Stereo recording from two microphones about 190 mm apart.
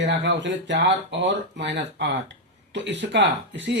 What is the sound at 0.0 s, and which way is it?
Speech, 70° right (ahead or behind).